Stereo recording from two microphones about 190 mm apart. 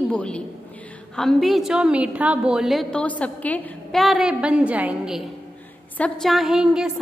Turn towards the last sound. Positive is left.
turn(degrees=-5)  # may be behind; listen again after turning